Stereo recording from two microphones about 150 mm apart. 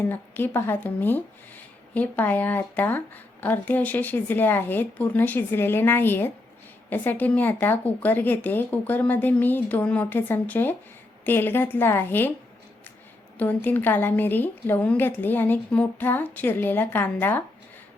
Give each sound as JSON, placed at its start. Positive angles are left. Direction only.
{"t": 0.1, "sound": "a woman's voice", "side_deg": 15}
{"t": 13.4, "sound": "a woman's voice", "side_deg": 10}